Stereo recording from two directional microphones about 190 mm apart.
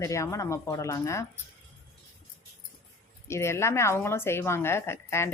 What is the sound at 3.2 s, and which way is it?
A woman's voice, 15° left (ahead or behind).